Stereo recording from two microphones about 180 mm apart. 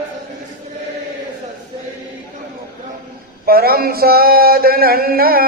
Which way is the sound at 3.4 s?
60° right (ahead or behind).